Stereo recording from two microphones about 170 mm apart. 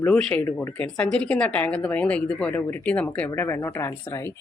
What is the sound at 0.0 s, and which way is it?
Speech, 5° left (ahead or behind).